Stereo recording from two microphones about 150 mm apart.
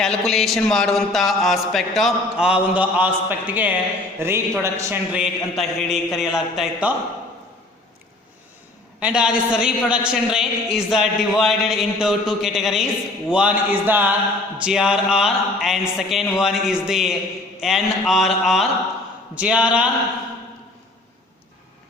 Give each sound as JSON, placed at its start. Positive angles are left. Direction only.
{"t": 0.0, "sound": "a man's voice", "side_deg": 0}
{"t": 5.1, "sound": "a man's voice", "side_deg": -5}
{"t": 9.0, "sound": "a man's voice", "side_deg": -5}